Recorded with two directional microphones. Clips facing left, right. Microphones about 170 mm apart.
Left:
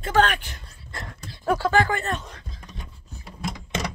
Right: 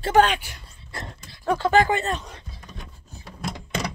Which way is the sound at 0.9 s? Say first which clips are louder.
Right 1 dB; 25° right (ahead or behind).